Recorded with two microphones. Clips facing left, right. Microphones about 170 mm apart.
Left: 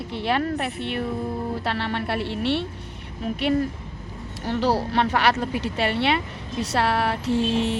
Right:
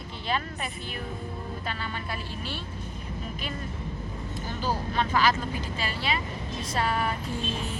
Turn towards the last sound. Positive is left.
turn(degrees=75)  # may be behind; listen again after turning